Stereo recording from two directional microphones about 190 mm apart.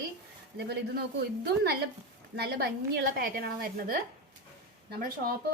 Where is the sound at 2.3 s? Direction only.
55° right (ahead or behind).